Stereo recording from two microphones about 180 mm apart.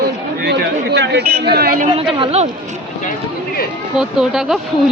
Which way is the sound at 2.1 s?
30° right (ahead or behind).